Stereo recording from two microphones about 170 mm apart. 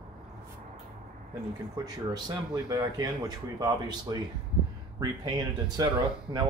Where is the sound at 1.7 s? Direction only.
20° right (ahead or behind).